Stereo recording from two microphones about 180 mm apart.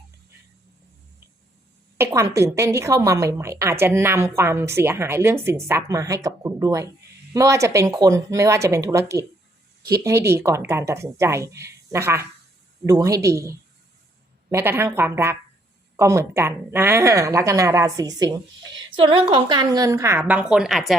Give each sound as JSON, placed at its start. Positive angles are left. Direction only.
{"t": 2.0, "sound": "a woman's voice", "side_deg": -15}